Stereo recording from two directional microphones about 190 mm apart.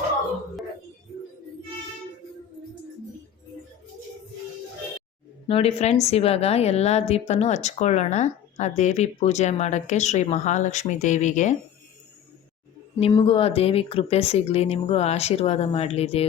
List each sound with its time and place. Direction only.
5.5 s speech: 30° left (ahead or behind)
13.0 s speech: 30° left (ahead or behind)